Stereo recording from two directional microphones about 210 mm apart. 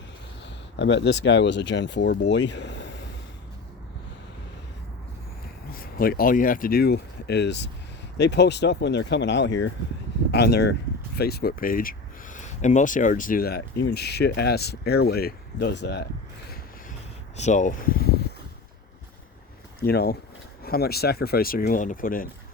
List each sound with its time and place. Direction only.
0.4 s speech: 60° left (ahead or behind)
5.7 s speech: 45° left (ahead or behind)
17.3 s speech: 35° left (ahead or behind)
19.8 s speech: 50° left (ahead or behind)